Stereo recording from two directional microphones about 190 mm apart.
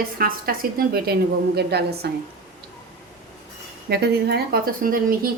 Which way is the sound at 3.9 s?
60° right (ahead or behind).